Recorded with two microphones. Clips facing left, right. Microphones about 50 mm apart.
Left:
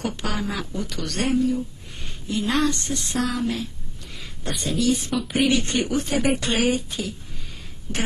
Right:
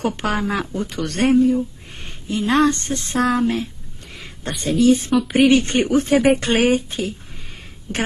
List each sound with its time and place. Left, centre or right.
0.0 s speech: right